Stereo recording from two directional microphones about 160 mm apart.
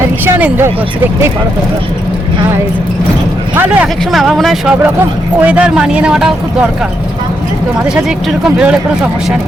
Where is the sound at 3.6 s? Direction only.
5° right (ahead or behind).